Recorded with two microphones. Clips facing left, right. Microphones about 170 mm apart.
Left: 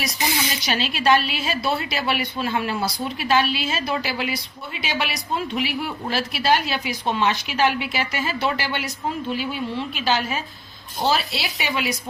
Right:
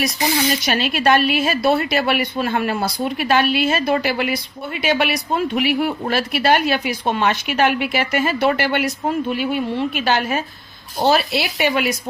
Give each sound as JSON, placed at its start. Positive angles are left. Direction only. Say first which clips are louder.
{"t": 0.6, "sound": "speech", "louder": "right 4 dB", "side_deg": -55}